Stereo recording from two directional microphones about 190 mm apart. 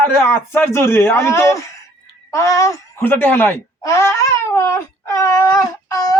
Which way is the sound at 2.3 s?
15° left (ahead or behind).